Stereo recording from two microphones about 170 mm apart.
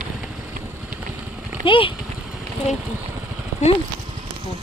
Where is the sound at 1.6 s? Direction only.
30° left (ahead or behind).